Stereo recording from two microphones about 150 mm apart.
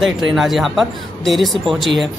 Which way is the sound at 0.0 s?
Centre (ahead or behind).